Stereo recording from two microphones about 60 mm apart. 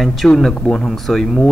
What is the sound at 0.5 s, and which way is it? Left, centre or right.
Speech, centre.